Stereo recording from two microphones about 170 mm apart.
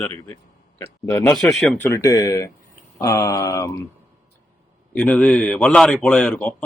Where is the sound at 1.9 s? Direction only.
20° left (ahead or behind).